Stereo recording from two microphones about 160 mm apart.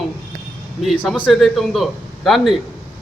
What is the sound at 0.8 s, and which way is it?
Speech, centre (ahead or behind).